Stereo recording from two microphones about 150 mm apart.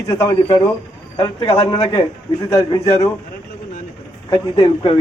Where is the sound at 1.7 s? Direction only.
25° left (ahead or behind).